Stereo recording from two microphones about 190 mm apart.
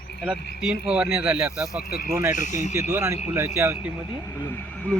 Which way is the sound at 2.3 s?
40° left (ahead or behind).